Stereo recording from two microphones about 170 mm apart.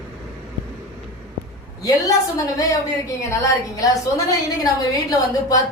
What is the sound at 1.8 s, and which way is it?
A woman's voice, 20° left (ahead or behind).